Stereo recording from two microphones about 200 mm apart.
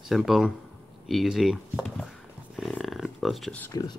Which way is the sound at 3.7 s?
20° left (ahead or behind).